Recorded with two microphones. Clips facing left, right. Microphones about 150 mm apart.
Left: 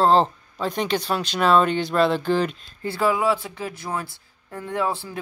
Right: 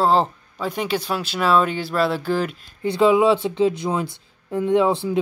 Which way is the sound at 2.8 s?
20° right (ahead or behind).